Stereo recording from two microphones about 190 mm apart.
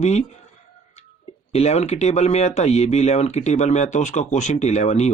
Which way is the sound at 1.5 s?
35° left (ahead or behind).